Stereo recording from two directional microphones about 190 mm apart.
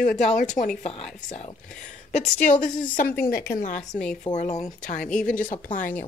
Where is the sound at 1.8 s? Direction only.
40° left (ahead or behind).